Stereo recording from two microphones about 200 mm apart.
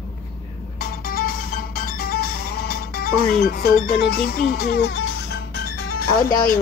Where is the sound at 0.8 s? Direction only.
45° left (ahead or behind).